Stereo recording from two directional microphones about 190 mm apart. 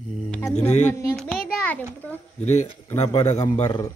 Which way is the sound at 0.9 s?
15° left (ahead or behind).